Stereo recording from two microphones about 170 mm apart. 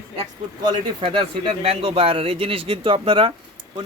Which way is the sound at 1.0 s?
30° right (ahead or behind).